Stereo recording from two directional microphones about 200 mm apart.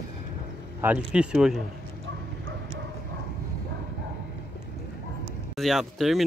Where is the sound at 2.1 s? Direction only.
65° right (ahead or behind).